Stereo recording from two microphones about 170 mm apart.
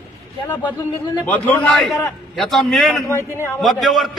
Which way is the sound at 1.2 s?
10° left (ahead or behind).